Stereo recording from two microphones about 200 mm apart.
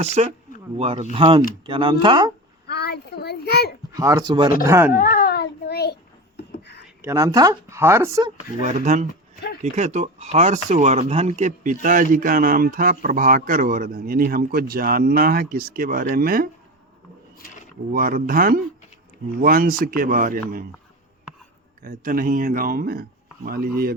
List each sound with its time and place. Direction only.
0.0 s speech: 35° right (ahead or behind)
2.6 s a sound: 55° left (ahead or behind)
3.9 s speech: 15° right (ahead or behind)
4.9 s a sound: 45° left (ahead or behind)
6.8 s speech: 10° right (ahead or behind)
8.6 s speech: 35° right (ahead or behind)
9.3 s a sound: 50° left (ahead or behind)
9.7 s speech: 35° right (ahead or behind)
17.9 s speech: 45° right (ahead or behind)
21.8 s speech: 45° right (ahead or behind)